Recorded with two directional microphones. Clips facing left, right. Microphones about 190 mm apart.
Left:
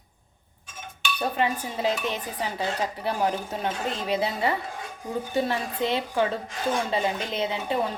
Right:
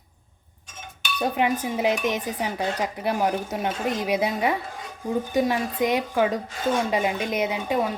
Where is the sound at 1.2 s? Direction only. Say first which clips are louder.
Right 3 dB; 15° right (ahead or behind).